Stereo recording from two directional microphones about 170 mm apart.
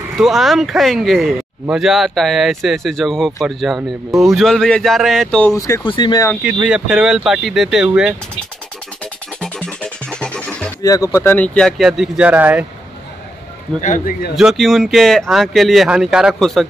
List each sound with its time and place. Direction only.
0.2 s speech: centre (ahead or behind)
5.5 s speech: 20° left (ahead or behind)
6.4 s speech: 5° right (ahead or behind)
9.0 s music: 5° left (ahead or behind)
10.8 s speech: 20° left (ahead or behind); by 12.6 s 10° right (ahead or behind)
13.7 s speech: 50° left (ahead or behind)
14.3 s speech: centre (ahead or behind)